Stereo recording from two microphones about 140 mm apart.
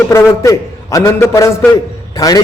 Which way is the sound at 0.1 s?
20° left (ahead or behind).